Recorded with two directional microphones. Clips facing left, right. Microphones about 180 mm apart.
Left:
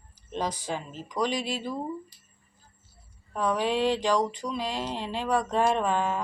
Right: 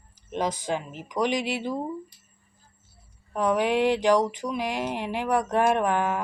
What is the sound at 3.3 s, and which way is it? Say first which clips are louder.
Mantra: right 3 dB; 20° right (ahead or behind).